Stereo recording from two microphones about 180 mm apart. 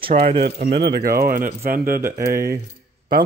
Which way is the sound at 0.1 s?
35° right (ahead or behind).